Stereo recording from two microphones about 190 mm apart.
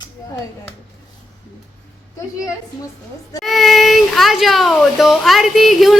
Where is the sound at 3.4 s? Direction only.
Centre (ahead or behind).